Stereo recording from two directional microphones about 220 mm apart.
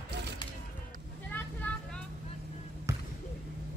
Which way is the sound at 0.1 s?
50° right (ahead or behind).